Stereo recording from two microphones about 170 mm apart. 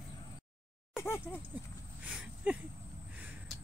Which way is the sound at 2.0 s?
5° right (ahead or behind).